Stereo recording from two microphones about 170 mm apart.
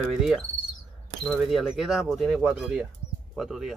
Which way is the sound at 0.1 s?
Centre (ahead or behind).